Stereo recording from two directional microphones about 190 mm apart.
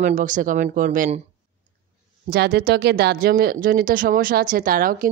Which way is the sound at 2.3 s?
55° right (ahead or behind).